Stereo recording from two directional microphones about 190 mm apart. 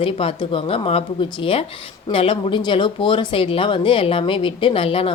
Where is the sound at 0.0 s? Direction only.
30° left (ahead or behind).